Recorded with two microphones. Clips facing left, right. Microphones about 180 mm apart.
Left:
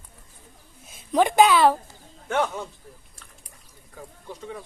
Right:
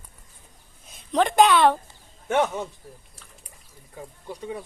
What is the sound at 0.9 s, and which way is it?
Speech, 5° left (ahead or behind).